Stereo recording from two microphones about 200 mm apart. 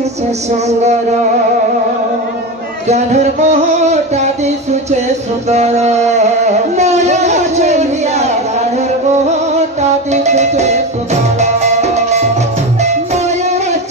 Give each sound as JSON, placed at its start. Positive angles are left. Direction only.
{"t": 2.9, "sound": "music", "side_deg": -35}
{"t": 5.5, "sound": "music", "side_deg": -35}